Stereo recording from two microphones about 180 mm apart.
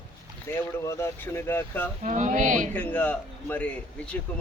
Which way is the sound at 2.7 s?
10° left (ahead or behind).